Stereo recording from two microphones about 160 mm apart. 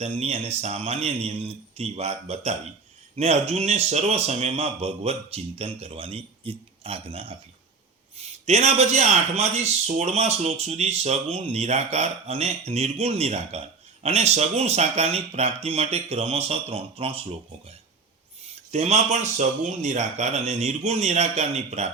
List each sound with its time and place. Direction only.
0.0 s a man's voice: 40° right (ahead or behind)
18.4 s speech: 40° right (ahead or behind)